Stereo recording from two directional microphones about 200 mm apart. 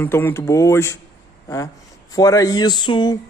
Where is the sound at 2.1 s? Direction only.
15° left (ahead or behind).